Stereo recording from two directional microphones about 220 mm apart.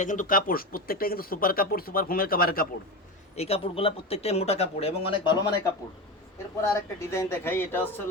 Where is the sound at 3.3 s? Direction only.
25° left (ahead or behind).